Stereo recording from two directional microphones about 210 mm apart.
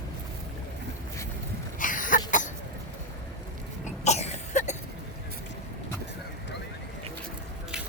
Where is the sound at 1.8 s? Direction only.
40° left (ahead or behind).